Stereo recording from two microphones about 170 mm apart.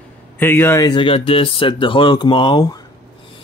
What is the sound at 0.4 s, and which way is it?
Speech, 15° left (ahead or behind).